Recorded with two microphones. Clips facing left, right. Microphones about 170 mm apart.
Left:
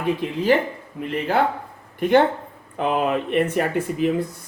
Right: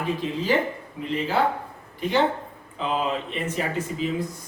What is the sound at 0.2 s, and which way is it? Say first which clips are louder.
Speech: left 3 dB; 60° left (ahead or behind).